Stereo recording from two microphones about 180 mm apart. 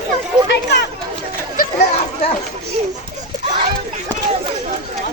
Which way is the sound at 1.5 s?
50° left (ahead or behind).